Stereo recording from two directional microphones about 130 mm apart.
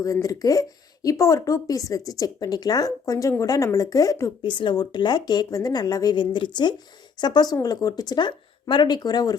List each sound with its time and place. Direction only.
0.0 s a woman's voice: 25° left (ahead or behind)